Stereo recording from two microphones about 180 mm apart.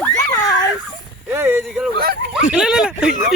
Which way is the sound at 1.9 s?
55° right (ahead or behind).